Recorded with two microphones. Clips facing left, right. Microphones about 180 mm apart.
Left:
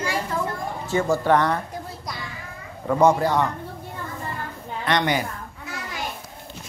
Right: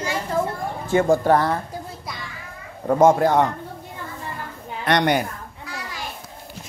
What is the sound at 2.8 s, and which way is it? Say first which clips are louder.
Speech: right 3 dB; 45° right (ahead or behind).